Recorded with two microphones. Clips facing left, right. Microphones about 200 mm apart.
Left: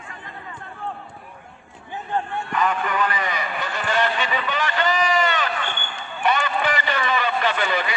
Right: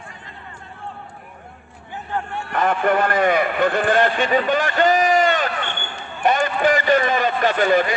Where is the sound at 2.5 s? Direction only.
55° right (ahead or behind).